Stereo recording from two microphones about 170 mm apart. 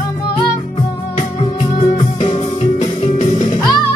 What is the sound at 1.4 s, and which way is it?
Music, 35° left (ahead or behind).